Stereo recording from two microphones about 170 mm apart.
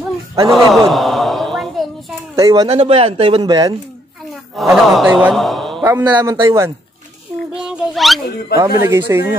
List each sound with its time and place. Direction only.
0.5 s a sound: centre (ahead or behind)
2.3 s speech: 20° right (ahead or behind)
2.7 s speech: 35° right (ahead or behind)
4.6 s a man's voice: centre (ahead or behind)
5.8 s a man's voice: 15° right (ahead or behind)
7.5 s a sound: 5° right (ahead or behind)
8.5 s speech: 15° right (ahead or behind)